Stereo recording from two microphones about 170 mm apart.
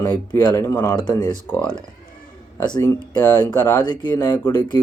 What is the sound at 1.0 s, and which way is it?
Speech, 25° left (ahead or behind).